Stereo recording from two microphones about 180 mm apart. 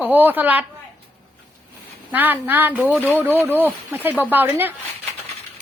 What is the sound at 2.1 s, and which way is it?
Speech, 10° right (ahead or behind).